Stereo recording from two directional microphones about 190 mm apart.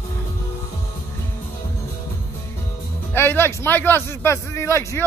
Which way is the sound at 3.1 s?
10° left (ahead or behind).